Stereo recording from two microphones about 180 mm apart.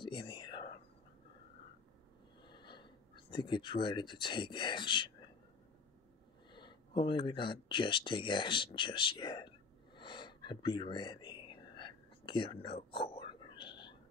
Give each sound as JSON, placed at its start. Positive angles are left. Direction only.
{"t": 0.0, "sound": "whispering", "side_deg": 25}
{"t": 2.4, "sound": "speech", "side_deg": 25}
{"t": 6.5, "sound": "speech", "side_deg": 25}
{"t": 9.9, "sound": "whispering", "side_deg": 25}